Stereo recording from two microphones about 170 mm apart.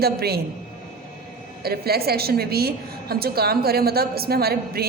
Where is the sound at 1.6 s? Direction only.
65° right (ahead or behind).